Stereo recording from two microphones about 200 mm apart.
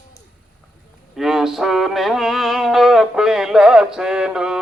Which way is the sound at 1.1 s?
Centre (ahead or behind).